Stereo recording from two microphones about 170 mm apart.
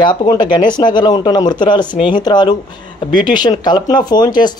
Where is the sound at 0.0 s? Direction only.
25° left (ahead or behind).